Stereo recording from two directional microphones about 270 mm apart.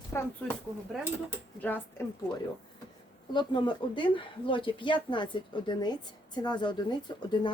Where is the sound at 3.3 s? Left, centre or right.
Centre.